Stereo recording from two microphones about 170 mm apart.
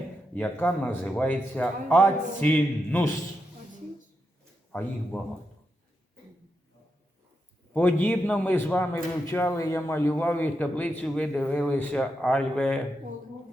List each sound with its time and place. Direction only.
0.3 s a man's voice: 10° left (ahead or behind)
4.7 s a man's voice: 10° left (ahead or behind)
7.7 s a man's voice: 10° left (ahead or behind)